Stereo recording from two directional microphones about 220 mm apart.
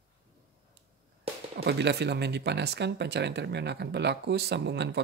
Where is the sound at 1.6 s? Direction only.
50° right (ahead or behind).